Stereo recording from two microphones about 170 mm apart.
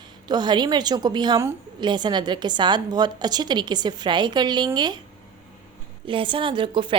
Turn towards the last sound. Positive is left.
turn(degrees=-30)  # may be behind; listen again after turning